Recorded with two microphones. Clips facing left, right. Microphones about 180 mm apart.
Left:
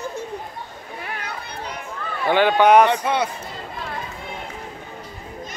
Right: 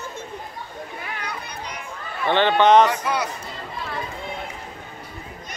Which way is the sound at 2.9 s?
30° left (ahead or behind).